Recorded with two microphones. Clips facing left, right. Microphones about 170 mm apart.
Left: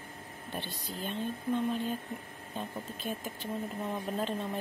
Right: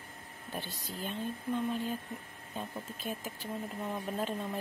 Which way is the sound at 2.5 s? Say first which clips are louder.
Left 1 dB; 5° right (ahead or behind).